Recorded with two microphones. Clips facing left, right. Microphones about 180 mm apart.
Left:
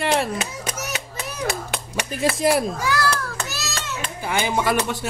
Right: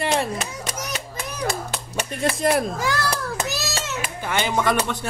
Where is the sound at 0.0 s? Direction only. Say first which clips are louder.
Left 1 dB; centre (ahead or behind).